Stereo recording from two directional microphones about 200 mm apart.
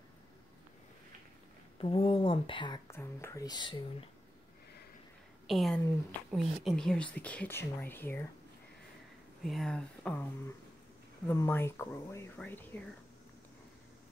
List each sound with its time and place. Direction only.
1.8 s speech: 30° left (ahead or behind)
5.5 s speech: centre (ahead or behind)
9.4 s speech: centre (ahead or behind)
11.2 s speech: 10° left (ahead or behind)